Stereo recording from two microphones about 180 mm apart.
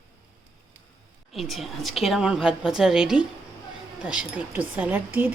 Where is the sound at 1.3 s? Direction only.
Centre (ahead or behind).